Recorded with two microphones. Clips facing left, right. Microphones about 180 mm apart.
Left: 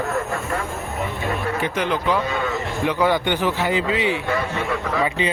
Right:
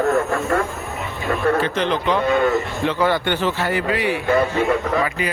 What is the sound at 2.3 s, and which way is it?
Speech, 50° right (ahead or behind).